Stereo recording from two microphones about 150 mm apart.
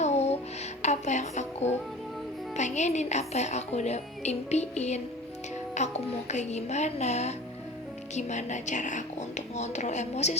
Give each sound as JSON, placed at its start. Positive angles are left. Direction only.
{"t": 0.0, "sound": "music", "side_deg": 45}
{"t": 2.6, "sound": "a woman's voice", "side_deg": 50}